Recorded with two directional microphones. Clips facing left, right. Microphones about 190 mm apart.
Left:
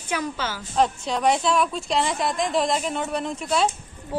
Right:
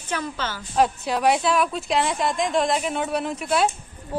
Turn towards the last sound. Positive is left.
turn(degrees=-5)  # may be behind; listen again after turning